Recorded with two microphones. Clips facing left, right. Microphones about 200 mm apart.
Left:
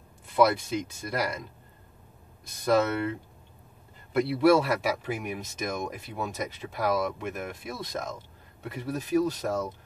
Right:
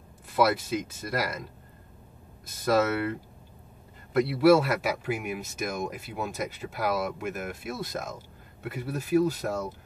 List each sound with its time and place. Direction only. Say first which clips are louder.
0.4 s speech: left 1 dB; 5° right (ahead or behind)
2.6 s speech: even; 5° right (ahead or behind)